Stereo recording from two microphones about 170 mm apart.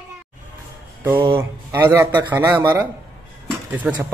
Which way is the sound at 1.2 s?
15° right (ahead or behind).